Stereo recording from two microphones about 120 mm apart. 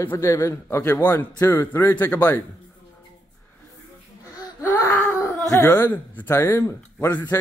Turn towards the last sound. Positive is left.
turn(degrees=20)  # may be behind; listen again after turning